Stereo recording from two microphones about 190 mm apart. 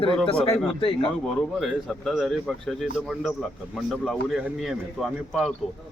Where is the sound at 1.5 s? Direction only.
Centre (ahead or behind).